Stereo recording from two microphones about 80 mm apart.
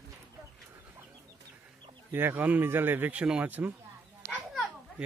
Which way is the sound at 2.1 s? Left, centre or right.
Right.